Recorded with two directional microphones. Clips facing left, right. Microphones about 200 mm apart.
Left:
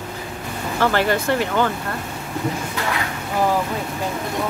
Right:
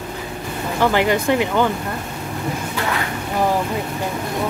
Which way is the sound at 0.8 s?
15° right (ahead or behind).